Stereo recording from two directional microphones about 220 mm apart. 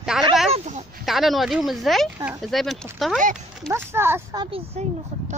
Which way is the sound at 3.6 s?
10° right (ahead or behind).